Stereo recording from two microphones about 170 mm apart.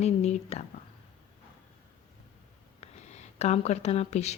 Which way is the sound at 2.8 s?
40° left (ahead or behind).